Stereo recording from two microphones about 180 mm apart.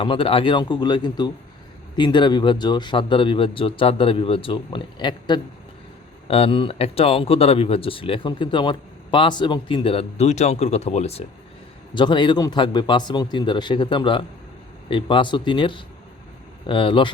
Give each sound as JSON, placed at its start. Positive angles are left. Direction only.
{"t": 0.0, "sound": "a man's voice", "side_deg": 30}